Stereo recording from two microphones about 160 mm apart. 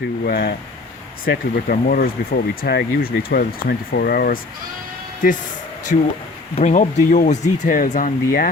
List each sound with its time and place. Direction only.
0.3 s speech: 80° left
1.2 s speech: 65° left (ahead or behind)
5.2 s speech: 60° left (ahead or behind)
6.6 s speech: 50° left (ahead or behind)